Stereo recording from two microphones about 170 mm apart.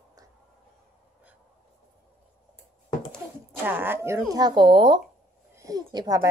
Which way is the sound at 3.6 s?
10° right (ahead or behind).